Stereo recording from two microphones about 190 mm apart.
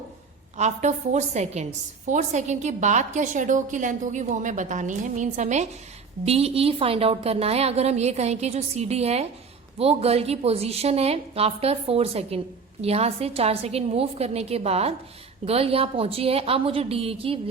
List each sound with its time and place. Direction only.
0.5 s a woman's voice: 35° right (ahead or behind)